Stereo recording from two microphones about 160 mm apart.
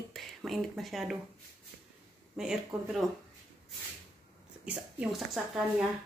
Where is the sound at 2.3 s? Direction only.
5° right (ahead or behind).